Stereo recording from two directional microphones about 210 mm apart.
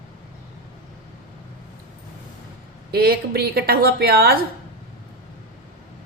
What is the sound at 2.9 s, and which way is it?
A woman's voice, 50° right (ahead or behind).